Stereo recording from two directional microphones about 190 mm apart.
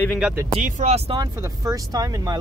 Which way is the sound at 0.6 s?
40° right (ahead or behind).